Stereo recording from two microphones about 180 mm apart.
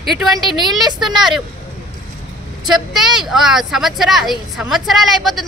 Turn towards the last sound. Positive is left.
turn(degrees=0)  # may be behind; listen again after turning